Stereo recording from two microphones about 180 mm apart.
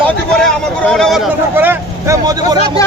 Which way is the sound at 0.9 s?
Centre (ahead or behind).